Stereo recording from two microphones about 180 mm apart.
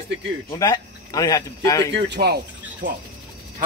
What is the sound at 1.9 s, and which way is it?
Speech, 65° right (ahead or behind).